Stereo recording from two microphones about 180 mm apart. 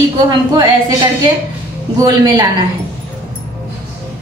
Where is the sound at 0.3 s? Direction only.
20° right (ahead or behind).